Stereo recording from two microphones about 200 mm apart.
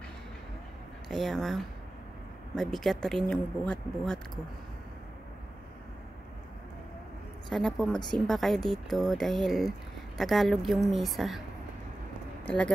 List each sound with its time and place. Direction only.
1.0 s speech: centre (ahead or behind)
7.4 s speech: centre (ahead or behind)
12.4 s speech: 5° left (ahead or behind)